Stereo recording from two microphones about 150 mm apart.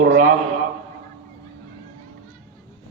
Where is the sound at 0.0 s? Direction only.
60° right (ahead or behind).